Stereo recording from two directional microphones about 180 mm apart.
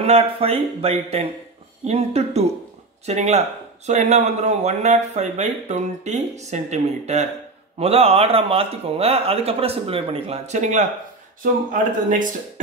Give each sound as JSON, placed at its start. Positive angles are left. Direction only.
{"t": 0.0, "sound": "a man's voice", "side_deg": -35}